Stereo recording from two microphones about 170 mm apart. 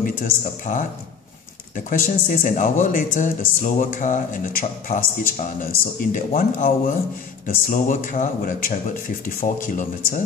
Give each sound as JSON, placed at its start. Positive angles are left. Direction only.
{"t": 0.0, "sound": "speech", "side_deg": 50}
{"t": 1.9, "sound": "speech", "side_deg": 50}